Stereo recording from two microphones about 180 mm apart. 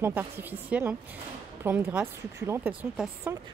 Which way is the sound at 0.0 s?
10° right (ahead or behind).